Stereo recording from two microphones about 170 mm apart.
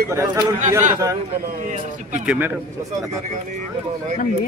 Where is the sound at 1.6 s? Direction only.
45° right (ahead or behind).